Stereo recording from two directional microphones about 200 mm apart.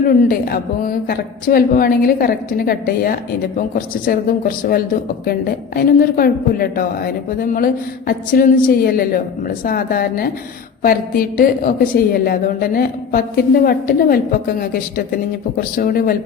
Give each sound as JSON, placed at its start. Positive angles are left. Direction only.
{"t": 0.1, "sound": "a woman's voice", "side_deg": 50}